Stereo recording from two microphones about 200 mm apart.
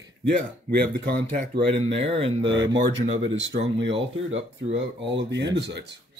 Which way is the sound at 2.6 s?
65° right (ahead or behind).